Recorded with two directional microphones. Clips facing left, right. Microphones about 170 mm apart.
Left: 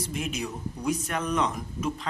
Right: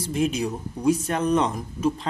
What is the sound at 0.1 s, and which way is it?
Speech, 30° right (ahead or behind).